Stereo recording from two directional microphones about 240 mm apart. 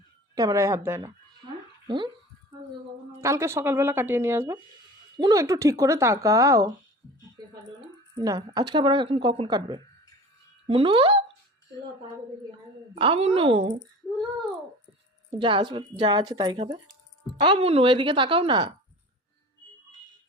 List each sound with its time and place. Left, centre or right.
0.3 s speech: centre
3.2 s speech: centre
7.4 s a sound: centre
8.2 s speech: centre
12.9 s speech: right
15.3 s speech: right